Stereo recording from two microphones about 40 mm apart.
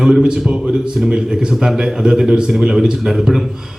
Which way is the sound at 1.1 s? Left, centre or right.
Centre.